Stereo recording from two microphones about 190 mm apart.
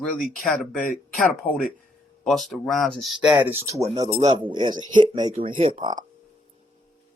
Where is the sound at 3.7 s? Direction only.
20° right (ahead or behind).